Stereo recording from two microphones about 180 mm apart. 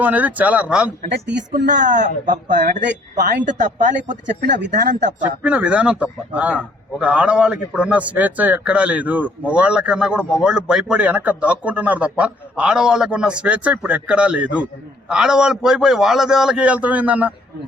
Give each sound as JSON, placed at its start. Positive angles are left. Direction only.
{"t": 0.0, "sound": "a man's voice", "side_deg": -10}
{"t": 1.0, "sound": "speech", "side_deg": -55}
{"t": 5.2, "sound": "a man's voice", "side_deg": -10}